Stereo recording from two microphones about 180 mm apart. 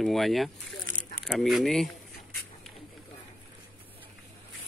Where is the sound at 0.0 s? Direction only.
Centre (ahead or behind).